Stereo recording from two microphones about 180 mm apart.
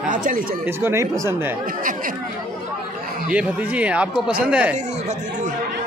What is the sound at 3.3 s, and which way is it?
Speech, 5° right (ahead or behind).